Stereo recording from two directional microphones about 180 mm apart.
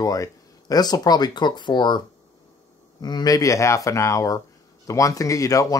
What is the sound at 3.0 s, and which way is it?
Speech, 20° left (ahead or behind).